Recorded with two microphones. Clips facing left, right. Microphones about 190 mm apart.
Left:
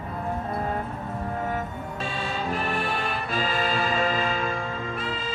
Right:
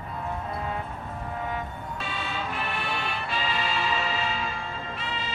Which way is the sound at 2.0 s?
40° left (ahead or behind).